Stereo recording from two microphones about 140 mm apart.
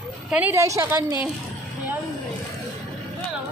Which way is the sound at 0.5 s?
20° right (ahead or behind).